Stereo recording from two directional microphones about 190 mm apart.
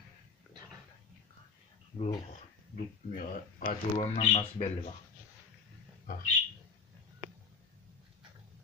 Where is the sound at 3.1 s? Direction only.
45° left (ahead or behind).